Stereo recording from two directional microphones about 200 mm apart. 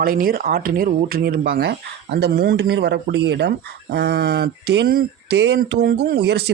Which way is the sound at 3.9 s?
55° right (ahead or behind).